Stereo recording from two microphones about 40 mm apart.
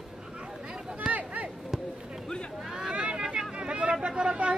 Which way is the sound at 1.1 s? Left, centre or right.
Right.